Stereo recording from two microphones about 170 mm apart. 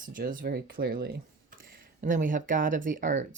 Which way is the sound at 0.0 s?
55° right (ahead or behind).